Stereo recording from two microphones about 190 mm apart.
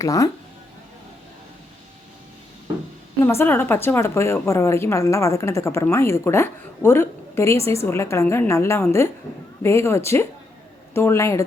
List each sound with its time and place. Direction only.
0.0 s a woman's voice: 15° left (ahead or behind)
3.2 s a woman's voice: 10° left (ahead or behind)